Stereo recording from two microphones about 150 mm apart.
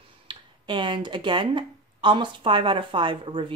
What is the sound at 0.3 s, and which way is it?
Speech, 30° right (ahead or behind).